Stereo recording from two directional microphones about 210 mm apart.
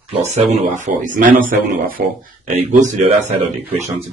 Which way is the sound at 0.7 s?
35° right (ahead or behind).